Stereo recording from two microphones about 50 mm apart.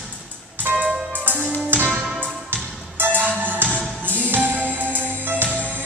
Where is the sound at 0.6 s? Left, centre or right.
Right.